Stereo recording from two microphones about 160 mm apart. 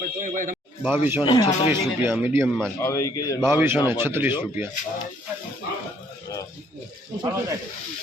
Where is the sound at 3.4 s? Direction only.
15° right (ahead or behind).